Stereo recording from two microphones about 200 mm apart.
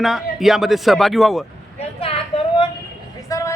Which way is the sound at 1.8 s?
30° left (ahead or behind).